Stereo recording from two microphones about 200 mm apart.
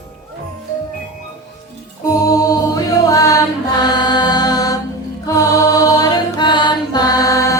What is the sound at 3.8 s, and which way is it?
Mantra, 20° left (ahead or behind).